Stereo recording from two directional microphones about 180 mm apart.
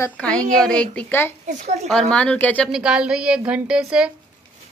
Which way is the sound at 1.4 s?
40° right (ahead or behind).